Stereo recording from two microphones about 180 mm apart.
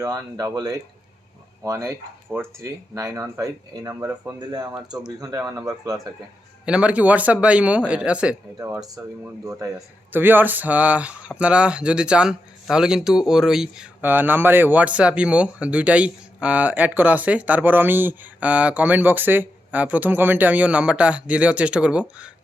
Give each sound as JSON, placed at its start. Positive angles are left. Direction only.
{"t": 0.0, "sound": "speech", "side_deg": -20}
{"t": 6.7, "sound": "speech", "side_deg": -5}
{"t": 8.5, "sound": "speech", "side_deg": -20}